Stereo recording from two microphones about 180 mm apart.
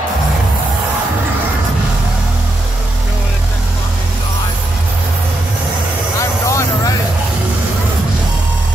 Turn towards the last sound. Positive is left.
turn(degrees=15)  # may be behind; listen again after turning